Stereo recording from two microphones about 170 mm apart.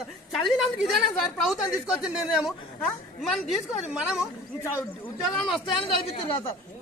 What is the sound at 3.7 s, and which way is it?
Speech, 5° right (ahead or behind).